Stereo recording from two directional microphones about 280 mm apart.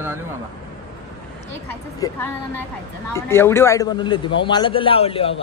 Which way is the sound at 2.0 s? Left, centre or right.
Centre.